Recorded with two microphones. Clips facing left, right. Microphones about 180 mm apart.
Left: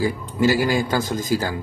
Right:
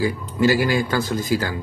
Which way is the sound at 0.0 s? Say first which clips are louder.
Even; 15° left (ahead or behind).